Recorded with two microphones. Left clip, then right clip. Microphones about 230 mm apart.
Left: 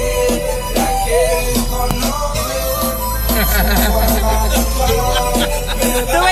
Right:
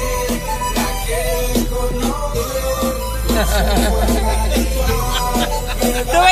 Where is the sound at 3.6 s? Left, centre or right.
Right.